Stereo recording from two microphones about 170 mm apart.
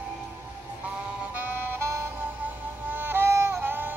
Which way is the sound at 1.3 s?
10° right (ahead or behind).